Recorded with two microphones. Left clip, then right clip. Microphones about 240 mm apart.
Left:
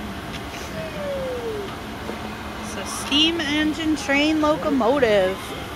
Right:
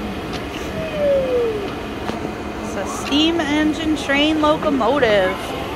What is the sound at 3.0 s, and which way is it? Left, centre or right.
Speech, centre.